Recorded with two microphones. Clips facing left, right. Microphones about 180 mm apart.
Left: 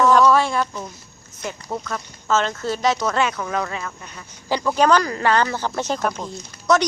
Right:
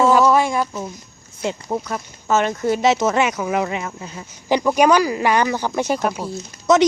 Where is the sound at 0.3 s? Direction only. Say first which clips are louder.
Right 1 dB; 15° right (ahead or behind).